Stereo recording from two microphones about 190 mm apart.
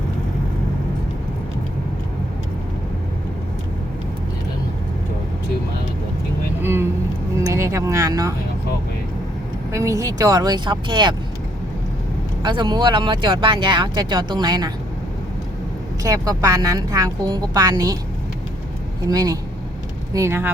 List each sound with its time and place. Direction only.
6.6 s vehicle: 10° right (ahead or behind)
7.4 s a sound: 15° right (ahead or behind)
9.7 s speech: 15° right (ahead or behind)
12.4 s speech: 25° right (ahead or behind)
16.0 s speech: 20° right (ahead or behind)
19.0 s speech: 20° right (ahead or behind)